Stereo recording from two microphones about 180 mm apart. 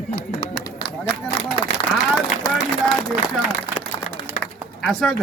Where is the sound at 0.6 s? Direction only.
25° left (ahead or behind).